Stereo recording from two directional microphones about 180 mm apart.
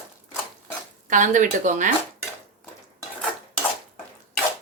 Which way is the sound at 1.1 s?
45° right (ahead or behind).